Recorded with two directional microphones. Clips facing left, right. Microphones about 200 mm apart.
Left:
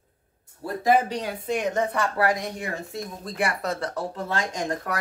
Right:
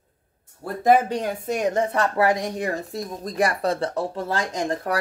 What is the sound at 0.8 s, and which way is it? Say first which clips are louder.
Speech: right 3 dB; 50° right (ahead or behind).